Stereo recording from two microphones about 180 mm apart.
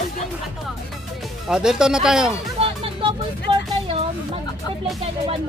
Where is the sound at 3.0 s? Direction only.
30° right (ahead or behind).